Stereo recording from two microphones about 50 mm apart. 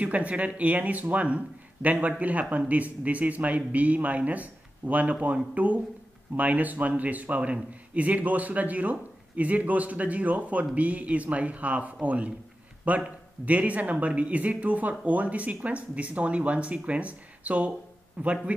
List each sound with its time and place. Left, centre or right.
0.0 s a man's voice: right